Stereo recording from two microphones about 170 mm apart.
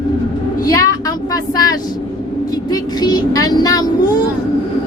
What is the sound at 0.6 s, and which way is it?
A woman's voice, 20° left (ahead or behind).